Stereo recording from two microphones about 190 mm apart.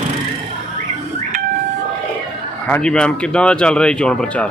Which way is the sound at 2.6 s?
5° left (ahead or behind).